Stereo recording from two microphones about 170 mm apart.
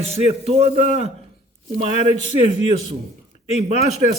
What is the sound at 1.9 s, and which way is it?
Speech, 40° left (ahead or behind).